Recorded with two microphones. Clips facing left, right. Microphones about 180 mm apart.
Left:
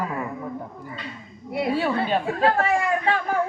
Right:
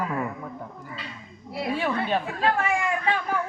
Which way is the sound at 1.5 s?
25° left (ahead or behind).